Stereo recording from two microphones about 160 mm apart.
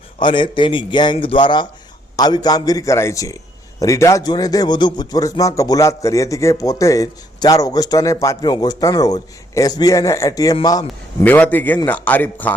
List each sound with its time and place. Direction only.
0.2 s a man's voice: 30° left (ahead or behind)
11.2 s a man's voice: 10° left (ahead or behind)